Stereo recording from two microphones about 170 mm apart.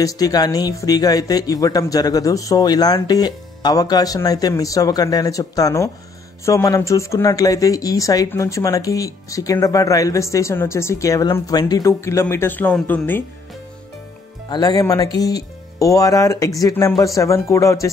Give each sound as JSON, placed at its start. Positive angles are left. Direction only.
{"t": 0.0, "sound": "speech", "side_deg": 20}
{"t": 14.5, "sound": "speech", "side_deg": 25}